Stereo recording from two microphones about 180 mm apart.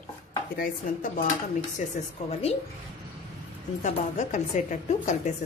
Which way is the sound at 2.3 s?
35° left (ahead or behind).